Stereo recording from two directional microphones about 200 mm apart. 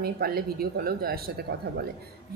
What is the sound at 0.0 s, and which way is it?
A woman's voice, 50° right (ahead or behind).